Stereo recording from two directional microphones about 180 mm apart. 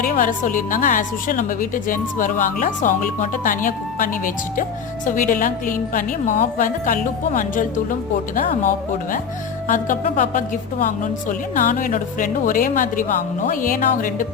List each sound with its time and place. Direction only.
0.0 s a woman's voice: 50° left (ahead or behind)
9.6 s a woman's voice: 45° left (ahead or behind)